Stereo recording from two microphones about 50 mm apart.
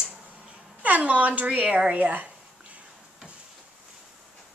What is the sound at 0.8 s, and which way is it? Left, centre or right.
Speech, right.